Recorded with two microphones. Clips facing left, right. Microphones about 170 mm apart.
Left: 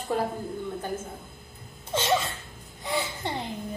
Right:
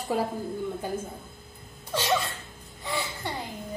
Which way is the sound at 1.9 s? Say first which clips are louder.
Left 1 dB; 20° left (ahead or behind).